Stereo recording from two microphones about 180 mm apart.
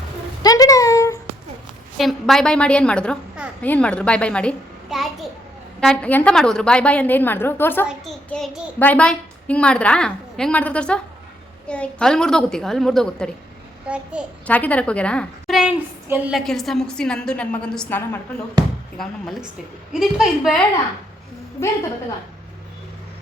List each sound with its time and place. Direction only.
0.4 s a sound: 20° left (ahead or behind)
2.0 s a woman's voice: centre (ahead or behind)
7.9 s a child's voice: centre (ahead or behind)
13.8 s a child's voice: 5° right (ahead or behind)
14.4 s a child's voice: 10° left (ahead or behind); by 16.4 s 10° right (ahead or behind)
16.4 s a woman's voice: centre (ahead or behind)